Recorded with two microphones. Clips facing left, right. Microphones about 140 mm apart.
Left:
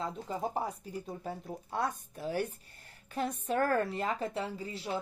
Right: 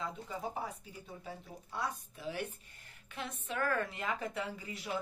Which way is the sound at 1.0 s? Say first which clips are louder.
Left 3 dB; 50° left (ahead or behind).